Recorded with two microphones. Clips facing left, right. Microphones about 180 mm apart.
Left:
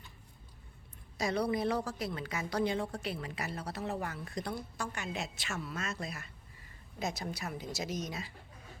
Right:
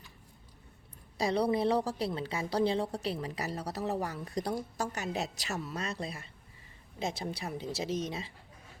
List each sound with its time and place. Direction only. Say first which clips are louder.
1.2 s a woman's voice: right 3 dB; 30° right (ahead or behind)